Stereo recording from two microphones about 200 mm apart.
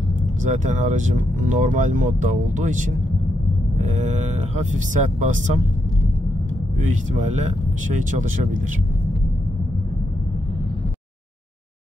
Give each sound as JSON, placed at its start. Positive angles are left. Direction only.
{"t": 0.4, "sound": "speech", "side_deg": -40}
{"t": 6.8, "sound": "speech", "side_deg": -40}